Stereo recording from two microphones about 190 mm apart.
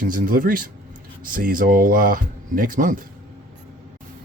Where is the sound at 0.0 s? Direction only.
45° right (ahead or behind).